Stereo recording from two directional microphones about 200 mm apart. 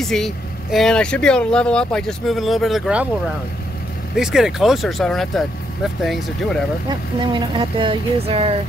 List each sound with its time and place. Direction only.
0.0 s speech: centre (ahead or behind)
4.2 s speech: centre (ahead or behind)
6.9 s speech: 20° right (ahead or behind)